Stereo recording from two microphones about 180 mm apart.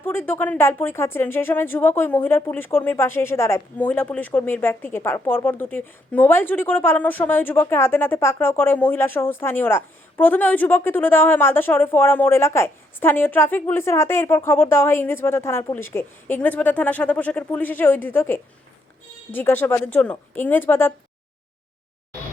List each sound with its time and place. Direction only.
0.0 s speech: 10° left (ahead or behind)